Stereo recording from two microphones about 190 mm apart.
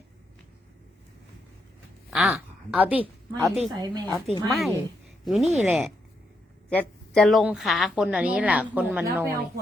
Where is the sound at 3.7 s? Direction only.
20° right (ahead or behind).